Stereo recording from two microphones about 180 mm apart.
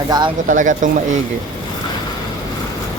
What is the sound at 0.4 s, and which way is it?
Speech, 45° right (ahead or behind).